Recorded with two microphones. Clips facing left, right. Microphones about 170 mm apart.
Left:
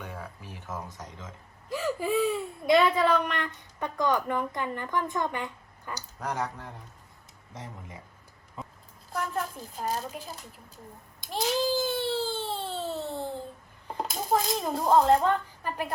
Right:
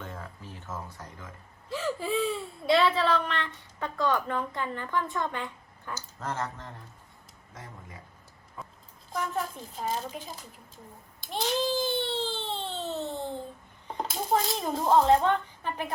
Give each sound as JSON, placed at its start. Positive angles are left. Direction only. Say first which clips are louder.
{"t": 0.0, "sound": "a sound", "louder": "left 1 dB", "side_deg": 15}
{"t": 0.9, "sound": "speech", "louder": "left 2 dB", "side_deg": 20}
{"t": 7.5, "sound": "speech", "louder": "left 3 dB", "side_deg": 25}
{"t": 9.1, "sound": "a woman's voice", "louder": "even", "side_deg": 0}
{"t": 11.3, "sound": "baby cry", "louder": "left 1 dB", "side_deg": 5}
{"t": 13.8, "sound": "speech", "louder": "even", "side_deg": 0}